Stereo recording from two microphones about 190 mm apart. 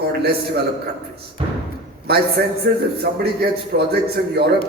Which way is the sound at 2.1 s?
55° right (ahead or behind).